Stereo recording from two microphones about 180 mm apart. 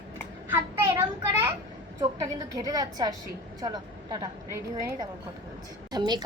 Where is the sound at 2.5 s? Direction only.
20° right (ahead or behind).